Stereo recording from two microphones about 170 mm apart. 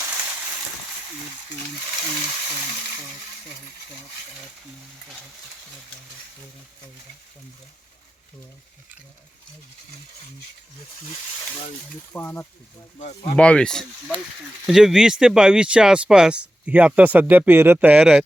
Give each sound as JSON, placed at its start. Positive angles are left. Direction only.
{"t": 12.1, "sound": "speech", "side_deg": 10}
{"t": 13.0, "sound": "speech", "side_deg": 40}
{"t": 13.3, "sound": "speech", "side_deg": 5}